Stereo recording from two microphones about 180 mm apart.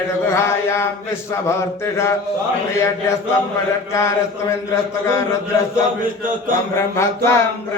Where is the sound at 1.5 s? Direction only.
15° left (ahead or behind).